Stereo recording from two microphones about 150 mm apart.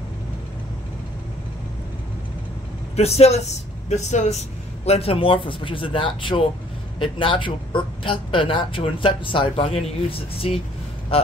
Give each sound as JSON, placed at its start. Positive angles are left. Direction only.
{"t": 3.0, "sound": "a man's voice", "side_deg": 45}